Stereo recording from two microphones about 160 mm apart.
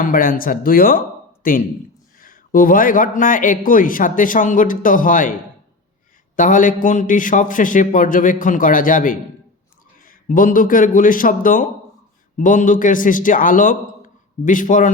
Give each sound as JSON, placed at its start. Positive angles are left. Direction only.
{"t": 0.0, "sound": "speech", "side_deg": 60}
{"t": 6.3, "sound": "speech", "side_deg": 55}